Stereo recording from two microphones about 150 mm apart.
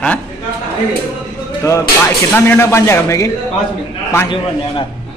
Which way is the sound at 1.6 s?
20° left (ahead or behind).